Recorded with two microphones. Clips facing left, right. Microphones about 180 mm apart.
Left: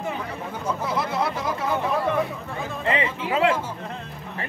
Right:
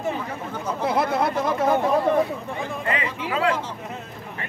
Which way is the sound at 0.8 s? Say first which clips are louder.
Right 5 dB; 55° right (ahead or behind).